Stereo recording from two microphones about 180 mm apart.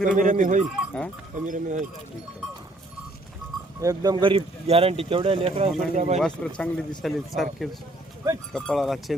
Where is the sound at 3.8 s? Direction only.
20° right (ahead or behind); by 6.1 s 40° right (ahead or behind).